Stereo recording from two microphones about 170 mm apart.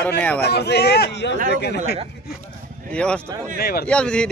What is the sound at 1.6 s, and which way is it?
Speech, 75° left (ahead or behind).